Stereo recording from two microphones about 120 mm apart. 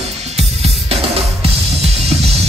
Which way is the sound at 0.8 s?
55° right (ahead or behind).